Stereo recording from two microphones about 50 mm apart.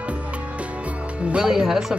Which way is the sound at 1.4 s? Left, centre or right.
Centre.